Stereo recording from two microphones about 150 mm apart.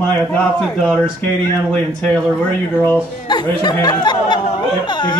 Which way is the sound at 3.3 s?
30° left (ahead or behind).